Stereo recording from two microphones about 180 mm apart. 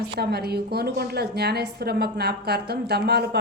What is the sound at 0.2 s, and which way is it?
A woman's voice, 60° right (ahead or behind).